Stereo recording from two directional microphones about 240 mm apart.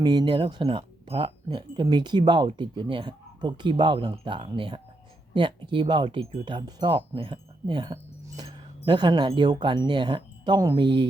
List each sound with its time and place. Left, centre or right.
0.0 s speech: centre